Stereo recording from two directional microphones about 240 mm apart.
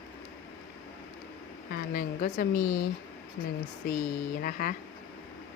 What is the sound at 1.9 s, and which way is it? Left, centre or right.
Speech, left.